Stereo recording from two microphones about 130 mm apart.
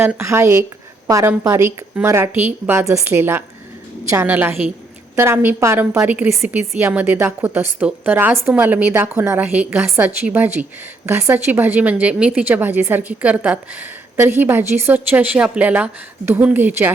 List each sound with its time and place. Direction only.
0.0 s a woman's voice: 20° right (ahead or behind)